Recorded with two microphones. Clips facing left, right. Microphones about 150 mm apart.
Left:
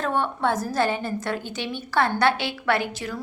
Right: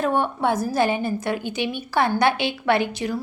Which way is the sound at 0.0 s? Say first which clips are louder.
Right 3 dB; 15° right (ahead or behind).